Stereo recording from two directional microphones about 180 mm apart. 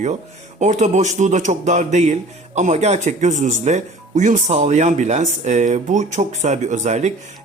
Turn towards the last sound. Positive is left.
turn(degrees=-40)  # may be behind; listen again after turning